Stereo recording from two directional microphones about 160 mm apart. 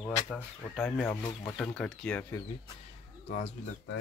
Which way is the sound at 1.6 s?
5° left (ahead or behind).